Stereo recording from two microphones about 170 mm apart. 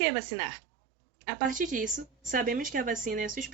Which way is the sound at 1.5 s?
50° right (ahead or behind).